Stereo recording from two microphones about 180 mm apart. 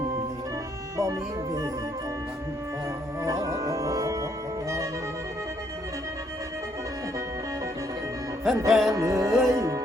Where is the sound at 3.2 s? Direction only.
15° right (ahead or behind).